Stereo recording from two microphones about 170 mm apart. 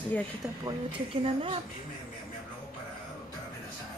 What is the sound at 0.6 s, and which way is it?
Speech, 30° right (ahead or behind).